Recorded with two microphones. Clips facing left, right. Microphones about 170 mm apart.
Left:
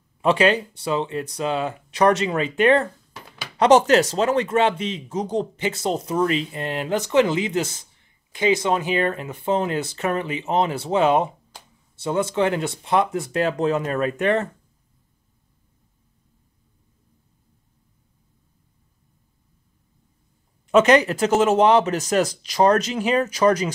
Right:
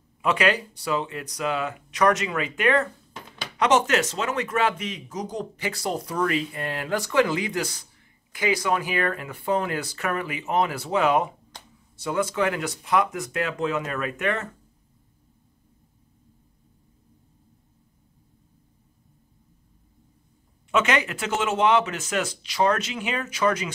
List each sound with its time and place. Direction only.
0.2 s speech: 30° left (ahead or behind)
20.7 s speech: 40° left (ahead or behind)